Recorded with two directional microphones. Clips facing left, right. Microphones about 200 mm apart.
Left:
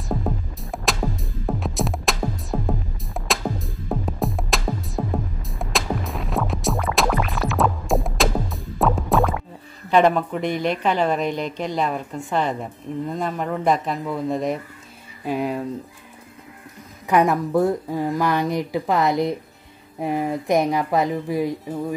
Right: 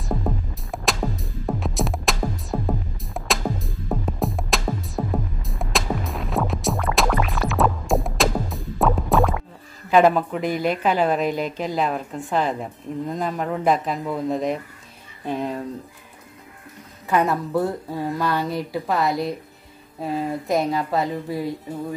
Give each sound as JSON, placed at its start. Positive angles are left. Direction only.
{"t": 0.1, "sound": "music", "side_deg": 0}
{"t": 9.8, "sound": "a woman's voice", "side_deg": -5}
{"t": 17.1, "sound": "speech", "side_deg": 15}